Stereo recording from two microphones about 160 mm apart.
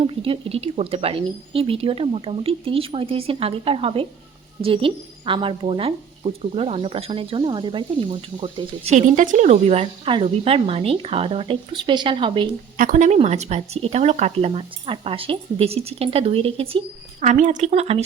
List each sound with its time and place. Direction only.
0.0 s speech: 35° right (ahead or behind)
8.9 s speech: 50° right (ahead or behind); by 12.5 s 30° right (ahead or behind)
12.7 s speech: 60° right (ahead or behind); by 18.0 s 40° right (ahead or behind)